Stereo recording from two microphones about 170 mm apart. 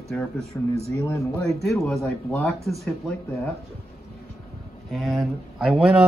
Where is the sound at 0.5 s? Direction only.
15° left (ahead or behind).